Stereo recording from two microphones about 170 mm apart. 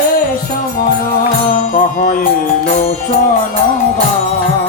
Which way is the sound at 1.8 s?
50° left (ahead or behind).